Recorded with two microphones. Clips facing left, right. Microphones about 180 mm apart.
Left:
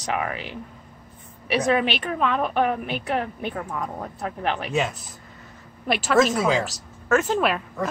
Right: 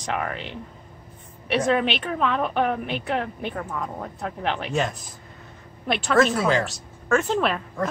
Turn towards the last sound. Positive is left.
turn(degrees=5)  # may be behind; listen again after turning